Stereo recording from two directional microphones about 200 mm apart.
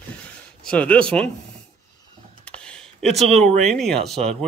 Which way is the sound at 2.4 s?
5° left (ahead or behind).